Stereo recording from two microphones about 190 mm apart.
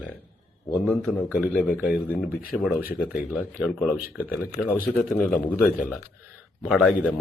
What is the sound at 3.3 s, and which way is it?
Speech, 5° right (ahead or behind).